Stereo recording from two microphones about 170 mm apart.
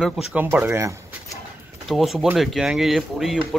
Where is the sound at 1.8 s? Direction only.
Centre (ahead or behind).